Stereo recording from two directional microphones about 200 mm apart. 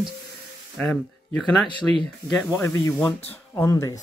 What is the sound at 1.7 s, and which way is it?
Speech, 25° left (ahead or behind).